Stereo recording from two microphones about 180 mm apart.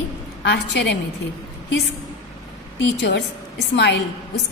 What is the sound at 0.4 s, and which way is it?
Speech, 70° left (ahead or behind).